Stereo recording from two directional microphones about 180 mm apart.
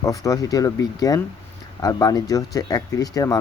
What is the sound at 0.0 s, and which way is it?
Speech, 20° left (ahead or behind).